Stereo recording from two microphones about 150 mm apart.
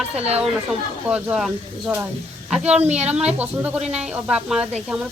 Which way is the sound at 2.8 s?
45° right (ahead or behind).